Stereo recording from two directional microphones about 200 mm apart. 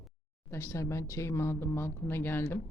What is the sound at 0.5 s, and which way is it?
Speech, 15° left (ahead or behind).